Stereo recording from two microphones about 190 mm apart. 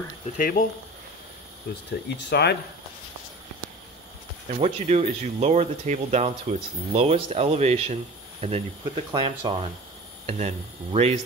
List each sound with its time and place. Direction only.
0.4 s speech: 50° left (ahead or behind)
1.7 s speech: 55° left (ahead or behind)
4.5 s speech: 35° right (ahead or behind)